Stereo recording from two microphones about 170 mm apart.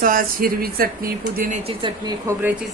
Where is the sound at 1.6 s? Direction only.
30° right (ahead or behind).